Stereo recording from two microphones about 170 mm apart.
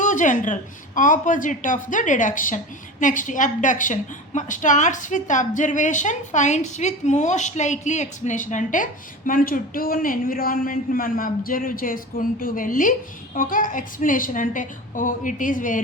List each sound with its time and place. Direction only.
0.0 s a woman's voice: 50° left (ahead or behind)